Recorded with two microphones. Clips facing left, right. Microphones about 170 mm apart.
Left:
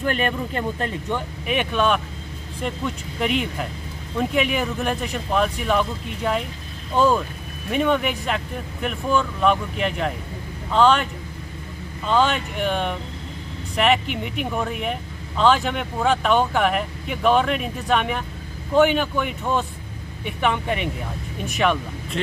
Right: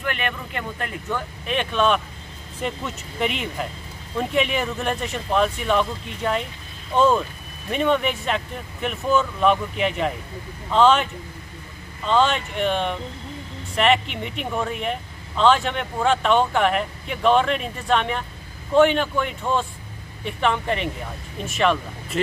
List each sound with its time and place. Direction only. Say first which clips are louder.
0.0 s speech: left 5 dB; 35° left (ahead or behind)
1.0 s speech: left 2 dB; 15° left (ahead or behind)
12.1 s speech: even; 5° left (ahead or behind)